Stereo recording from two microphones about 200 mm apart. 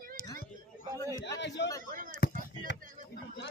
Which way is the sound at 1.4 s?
60° left (ahead or behind).